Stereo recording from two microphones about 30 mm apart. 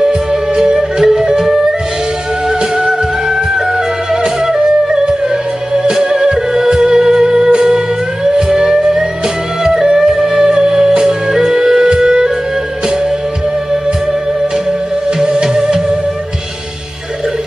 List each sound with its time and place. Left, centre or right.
0.3 s music: centre
1.0 s flute: centre
2.9 s music: centre
4.1 s flute: centre
4.6 s music: right
15.2 s music: right